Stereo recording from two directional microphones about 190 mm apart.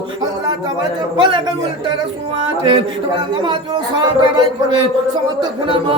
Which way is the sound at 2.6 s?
25° right (ahead or behind).